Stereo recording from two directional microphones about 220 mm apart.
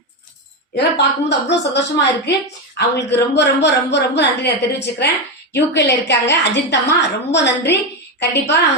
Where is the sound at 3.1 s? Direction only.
50° left (ahead or behind).